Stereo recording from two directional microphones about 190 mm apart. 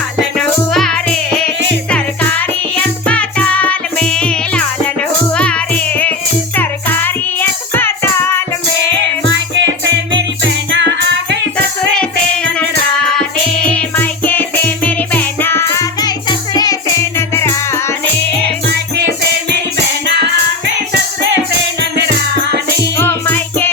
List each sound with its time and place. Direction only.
0.2 s music: centre (ahead or behind)
8.9 s music: 70° right (ahead or behind)
13.7 s music: 10° left (ahead or behind)
23.0 s music: 10° left (ahead or behind)